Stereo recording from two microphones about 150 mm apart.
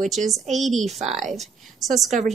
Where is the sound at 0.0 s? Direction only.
Centre (ahead or behind).